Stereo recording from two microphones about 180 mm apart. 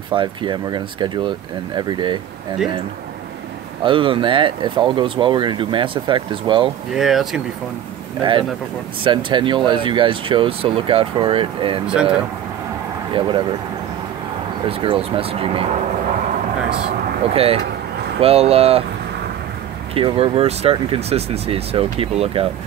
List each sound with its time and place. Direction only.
0.1 s speech: 25° right (ahead or behind)
3.8 s speech: 30° right (ahead or behind)
6.9 s speech: centre (ahead or behind)
8.2 s speech: 25° right (ahead or behind)
11.9 s speech: 5° right (ahead or behind)
14.7 s speech: 30° right (ahead or behind)
17.3 s speech: 35° right (ahead or behind)
19.9 s speech: 30° right (ahead or behind)